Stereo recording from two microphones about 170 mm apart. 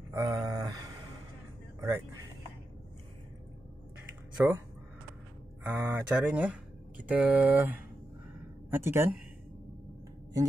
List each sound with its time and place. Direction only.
0.1 s a sound: 20° right (ahead or behind)
4.4 s speech: 5° right (ahead or behind)
5.6 s speech: 15° right (ahead or behind)